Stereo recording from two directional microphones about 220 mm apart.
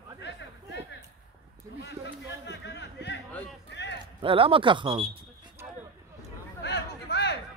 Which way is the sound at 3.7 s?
55° left (ahead or behind).